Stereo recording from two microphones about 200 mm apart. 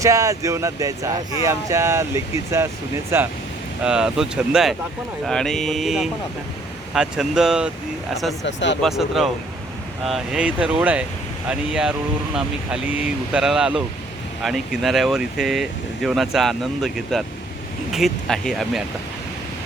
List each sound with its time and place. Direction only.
0.0 s speech: 15° right (ahead or behind); by 8.4 s centre (ahead or behind)
8.4 s speech: 65° left (ahead or behind)
8.8 s speech: centre (ahead or behind)